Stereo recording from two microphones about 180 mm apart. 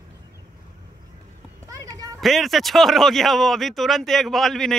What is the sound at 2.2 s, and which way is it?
Speech, centre (ahead or behind).